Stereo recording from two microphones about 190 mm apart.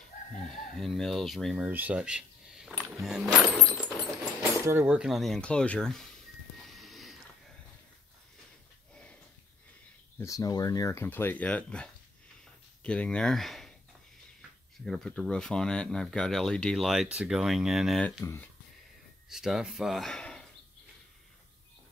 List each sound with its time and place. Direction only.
0.4 s speech: centre (ahead or behind)
2.8 s a sound: centre (ahead or behind)
4.6 s speech: 15° right (ahead or behind); by 6.0 s 5° left (ahead or behind)
6.6 s a sound: centre (ahead or behind)
10.1 s speech: 15° left (ahead or behind); by 13.7 s centre (ahead or behind)
14.9 s speech: 5° left (ahead or behind)
18.2 s speech: 15° left (ahead or behind)
19.2 s speech: centre (ahead or behind)